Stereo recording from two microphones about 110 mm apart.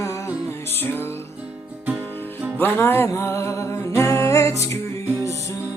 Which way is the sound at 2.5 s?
20° left (ahead or behind).